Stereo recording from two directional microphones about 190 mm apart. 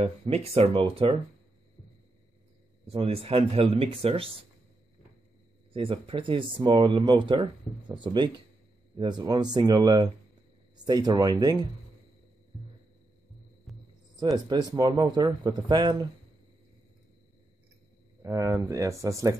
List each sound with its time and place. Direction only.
0.0 s speech: 35° right (ahead or behind)
2.9 s speech: 30° right (ahead or behind)
5.7 s speech: 30° right (ahead or behind)
13.7 s music: centre (ahead or behind)
14.2 s speech: 20° right (ahead or behind)
18.2 s speech: 15° right (ahead or behind)